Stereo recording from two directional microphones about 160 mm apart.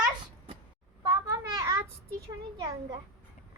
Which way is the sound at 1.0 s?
20° right (ahead or behind).